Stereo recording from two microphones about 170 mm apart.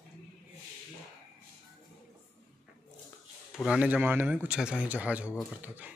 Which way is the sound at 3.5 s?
Centre (ahead or behind).